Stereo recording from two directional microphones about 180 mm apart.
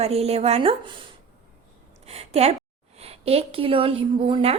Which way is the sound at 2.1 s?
35° right (ahead or behind).